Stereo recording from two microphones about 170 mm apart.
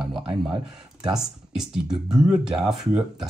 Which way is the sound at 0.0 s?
5° right (ahead or behind).